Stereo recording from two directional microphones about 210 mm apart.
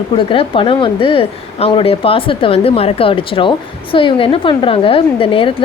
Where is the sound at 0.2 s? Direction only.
25° left (ahead or behind).